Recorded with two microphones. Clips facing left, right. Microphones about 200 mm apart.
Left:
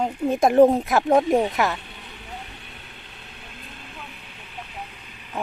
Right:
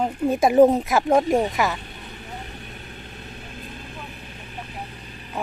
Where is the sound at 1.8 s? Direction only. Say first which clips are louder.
Right 3 dB; 45° right (ahead or behind).